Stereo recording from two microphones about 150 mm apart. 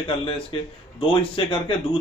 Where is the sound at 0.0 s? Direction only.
35° left (ahead or behind).